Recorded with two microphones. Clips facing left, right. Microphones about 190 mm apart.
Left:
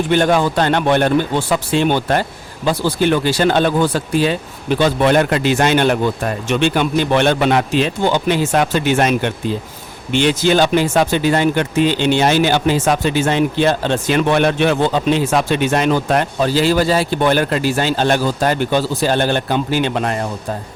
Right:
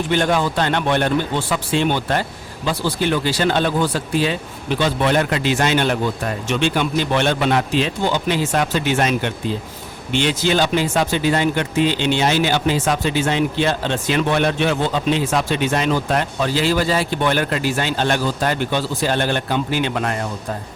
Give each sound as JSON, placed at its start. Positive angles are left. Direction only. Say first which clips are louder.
{"t": 0.1, "sound": "speech", "louder": "left 4 dB", "side_deg": 50}
{"t": 16.4, "sound": "speech", "louder": "left 4 dB", "side_deg": 40}